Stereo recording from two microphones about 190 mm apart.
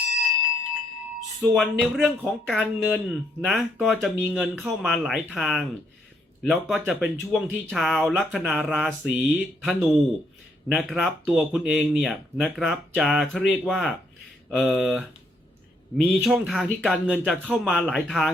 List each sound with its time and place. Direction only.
1.4 s speech: centre (ahead or behind)